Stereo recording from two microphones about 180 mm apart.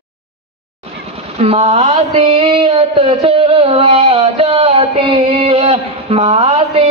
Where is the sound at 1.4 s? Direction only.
35° right (ahead or behind).